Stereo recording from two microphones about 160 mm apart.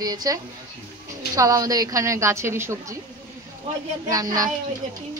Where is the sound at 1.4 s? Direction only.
20° right (ahead or behind).